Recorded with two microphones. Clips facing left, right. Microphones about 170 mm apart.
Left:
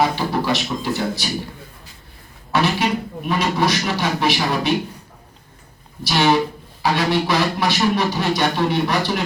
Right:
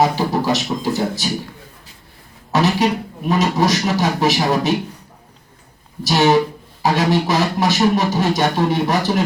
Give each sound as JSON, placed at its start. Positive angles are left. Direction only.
{"t": 0.0, "sound": "speech", "side_deg": -40}
{"t": 2.5, "sound": "speech", "side_deg": -40}
{"t": 6.0, "sound": "speech", "side_deg": -45}